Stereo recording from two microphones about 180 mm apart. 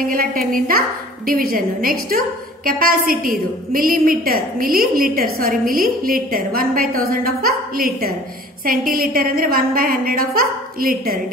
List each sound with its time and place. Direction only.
0.0 s a woman's voice: 50° right (ahead or behind)